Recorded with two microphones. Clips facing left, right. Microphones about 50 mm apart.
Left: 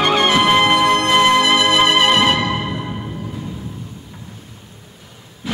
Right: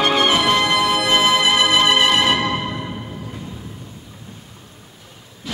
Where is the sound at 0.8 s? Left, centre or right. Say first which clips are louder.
Left 4 dB; left.